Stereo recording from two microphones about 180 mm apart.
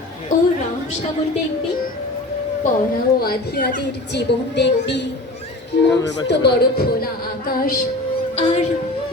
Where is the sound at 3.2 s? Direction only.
60° left (ahead or behind).